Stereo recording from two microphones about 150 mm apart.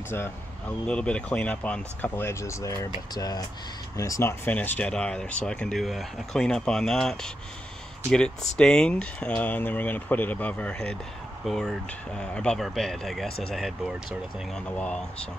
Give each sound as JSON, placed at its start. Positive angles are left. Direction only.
{"t": 0.8, "sound": "speech", "side_deg": 5}
{"t": 8.5, "sound": "speech", "side_deg": 5}